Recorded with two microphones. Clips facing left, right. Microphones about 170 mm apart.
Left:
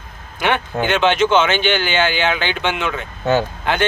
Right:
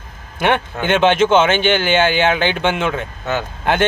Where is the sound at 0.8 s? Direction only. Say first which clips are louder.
Right 2 dB; 50° right (ahead or behind).